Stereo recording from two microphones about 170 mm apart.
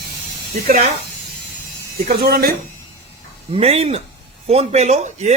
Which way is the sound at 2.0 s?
65° right (ahead or behind).